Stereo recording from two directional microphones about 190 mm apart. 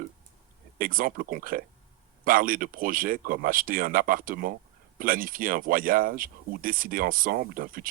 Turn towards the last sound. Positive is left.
turn(degrees=-50)  # may be behind; listen again after turning